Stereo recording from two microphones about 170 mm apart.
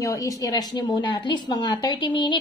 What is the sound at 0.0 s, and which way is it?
Speech, 20° left (ahead or behind).